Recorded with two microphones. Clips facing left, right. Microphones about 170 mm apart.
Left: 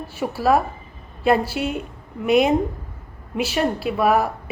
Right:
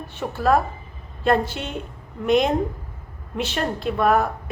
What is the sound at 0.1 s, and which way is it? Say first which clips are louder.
A woman's voice: left 1 dB; 10° left (ahead or behind).